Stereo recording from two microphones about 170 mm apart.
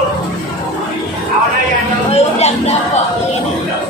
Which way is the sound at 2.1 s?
40° left (ahead or behind).